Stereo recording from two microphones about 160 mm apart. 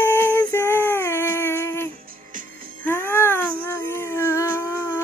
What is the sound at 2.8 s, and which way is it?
Music, 15° left (ahead or behind).